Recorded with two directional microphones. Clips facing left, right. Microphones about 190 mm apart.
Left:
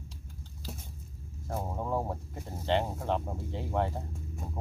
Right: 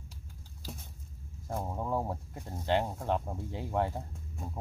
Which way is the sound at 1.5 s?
Centre (ahead or behind).